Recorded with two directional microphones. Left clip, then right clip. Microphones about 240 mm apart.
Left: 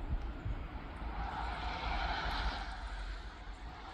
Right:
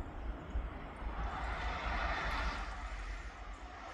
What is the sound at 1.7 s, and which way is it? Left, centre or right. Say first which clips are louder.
Vehicle: right 1 dB; right.